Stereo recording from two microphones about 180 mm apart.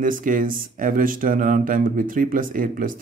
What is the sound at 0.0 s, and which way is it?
Speech, 45° right (ahead or behind).